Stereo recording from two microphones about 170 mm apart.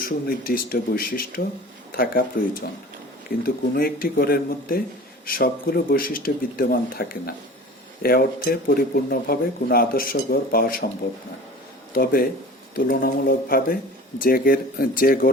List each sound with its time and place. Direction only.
0.0 s speech: 60° left (ahead or behind)
11.9 s speech: 60° left (ahead or behind)